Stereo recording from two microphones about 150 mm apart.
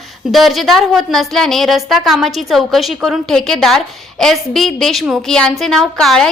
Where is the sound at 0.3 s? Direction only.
Centre (ahead or behind).